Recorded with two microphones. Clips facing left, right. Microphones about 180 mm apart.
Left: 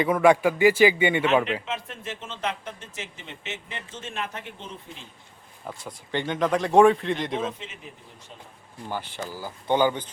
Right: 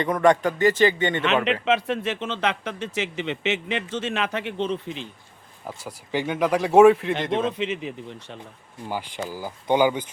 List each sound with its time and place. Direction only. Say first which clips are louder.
0.0 s a man's voice: even; 5° left (ahead or behind)
1.6 s speech: right 11 dB; 85° right
5.6 s speech: right 2 dB; 5° right (ahead or behind)
7.1 s speech: right 3 dB; 80° right
8.9 s speech: right 3 dB; 10° right (ahead or behind)